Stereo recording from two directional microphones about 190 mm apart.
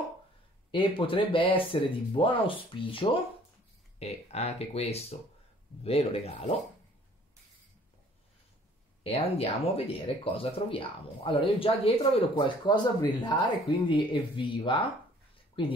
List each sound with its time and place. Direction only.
0.7 s speech: 25° left (ahead or behind)
9.0 s speech: 30° left (ahead or behind)